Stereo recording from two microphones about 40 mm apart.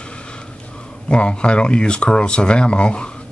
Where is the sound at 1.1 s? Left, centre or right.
Left.